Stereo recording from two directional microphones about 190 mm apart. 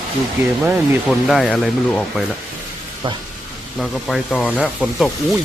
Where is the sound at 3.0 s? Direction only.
25° right (ahead or behind).